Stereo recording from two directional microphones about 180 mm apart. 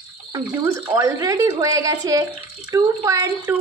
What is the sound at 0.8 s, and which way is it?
A woman's voice, 15° right (ahead or behind).